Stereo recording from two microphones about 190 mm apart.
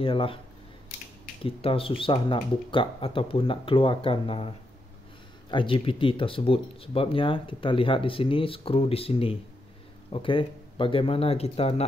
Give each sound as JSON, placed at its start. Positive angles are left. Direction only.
{"t": 0.0, "sound": "speech", "side_deg": 30}
{"t": 1.4, "sound": "speech", "side_deg": 30}
{"t": 5.5, "sound": "speech", "side_deg": 25}